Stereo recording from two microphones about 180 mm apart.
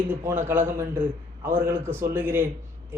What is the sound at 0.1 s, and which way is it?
A man's voice, 10° right (ahead or behind).